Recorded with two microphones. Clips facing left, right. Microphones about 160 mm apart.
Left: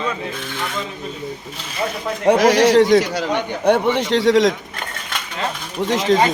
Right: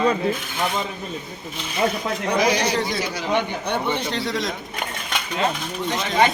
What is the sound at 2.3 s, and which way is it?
A man's voice, 80° left.